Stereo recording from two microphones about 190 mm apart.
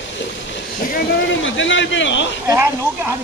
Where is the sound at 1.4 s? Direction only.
85° left.